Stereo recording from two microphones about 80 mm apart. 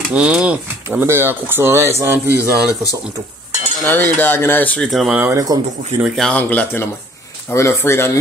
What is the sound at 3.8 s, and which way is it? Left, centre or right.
Speech, left.